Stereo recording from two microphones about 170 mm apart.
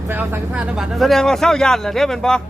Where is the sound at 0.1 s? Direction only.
10° right (ahead or behind).